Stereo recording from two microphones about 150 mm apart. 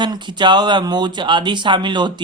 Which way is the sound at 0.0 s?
30° right (ahead or behind).